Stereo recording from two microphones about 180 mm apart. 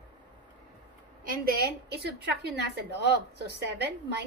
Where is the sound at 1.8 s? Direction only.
65° right (ahead or behind).